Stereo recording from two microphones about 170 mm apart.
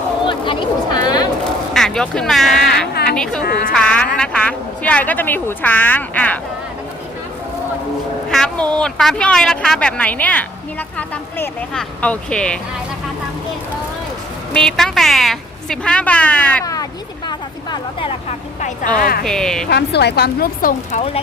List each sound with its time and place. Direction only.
0.3 s a sound: 25° left (ahead or behind)
1.7 s a woman's voice: 5° left (ahead or behind)
8.3 s a woman's voice: 5° left (ahead or behind)
14.5 s a woman's voice: 5° left (ahead or behind)
17.2 s a sound: 25° left (ahead or behind)
18.3 s speech: 45° left (ahead or behind)
18.9 s speech: 60° left (ahead or behind)
19.2 s a woman's voice: 5° left (ahead or behind)
19.7 s speech: 80° left; by 21.0 s 55° left (ahead or behind)